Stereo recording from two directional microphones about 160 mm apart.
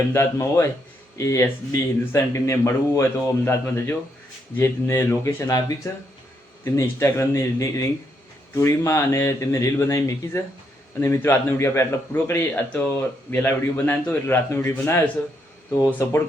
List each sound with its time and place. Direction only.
0.1 s a man's voice: 15° left (ahead or behind)